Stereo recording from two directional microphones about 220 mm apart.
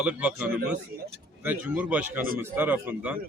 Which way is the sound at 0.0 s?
5° right (ahead or behind).